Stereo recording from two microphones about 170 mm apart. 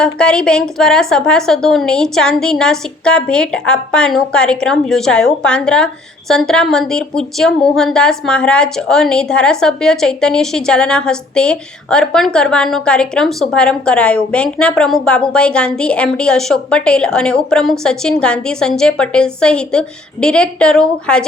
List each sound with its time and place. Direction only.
0.0 s a woman's voice: 5° left (ahead or behind)